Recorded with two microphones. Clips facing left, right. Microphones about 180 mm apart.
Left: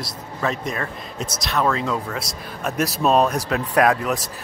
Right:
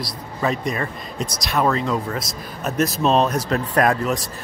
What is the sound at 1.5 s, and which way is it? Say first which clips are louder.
Speech: right 1 dB; 5° right (ahead or behind).